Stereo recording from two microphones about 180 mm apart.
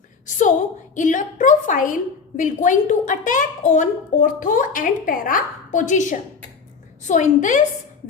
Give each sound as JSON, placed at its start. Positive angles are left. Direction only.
{"t": 0.3, "sound": "a woman's voice", "side_deg": 45}